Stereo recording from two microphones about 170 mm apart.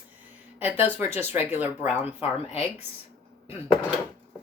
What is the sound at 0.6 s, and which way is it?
Speech, 10° right (ahead or behind).